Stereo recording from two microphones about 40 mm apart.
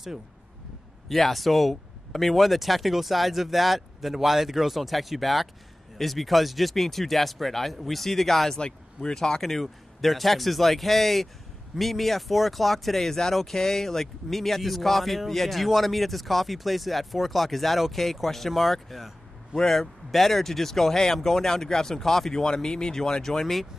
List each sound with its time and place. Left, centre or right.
1.0 s speech: centre
8.5 s speech: centre
9.4 s speech: centre
22.3 s speech: centre